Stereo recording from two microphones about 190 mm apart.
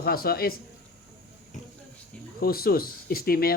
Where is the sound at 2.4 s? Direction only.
50° left (ahead or behind).